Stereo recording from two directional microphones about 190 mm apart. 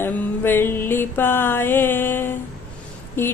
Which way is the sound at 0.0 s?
10° left (ahead or behind).